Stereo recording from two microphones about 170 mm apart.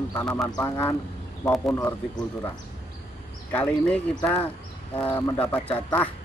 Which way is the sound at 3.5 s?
10° left (ahead or behind).